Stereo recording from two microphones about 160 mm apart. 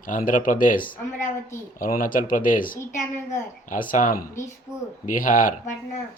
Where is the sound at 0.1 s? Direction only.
55° left (ahead or behind).